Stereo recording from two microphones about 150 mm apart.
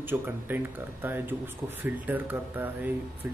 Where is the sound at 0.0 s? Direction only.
15° right (ahead or behind).